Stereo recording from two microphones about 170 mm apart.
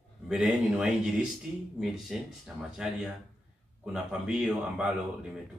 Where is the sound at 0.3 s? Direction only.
5° right (ahead or behind).